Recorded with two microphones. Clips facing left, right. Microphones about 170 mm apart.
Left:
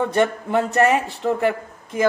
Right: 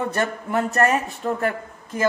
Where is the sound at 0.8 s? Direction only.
85° left.